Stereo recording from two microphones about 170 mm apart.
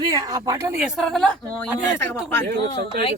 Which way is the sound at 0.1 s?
20° right (ahead or behind).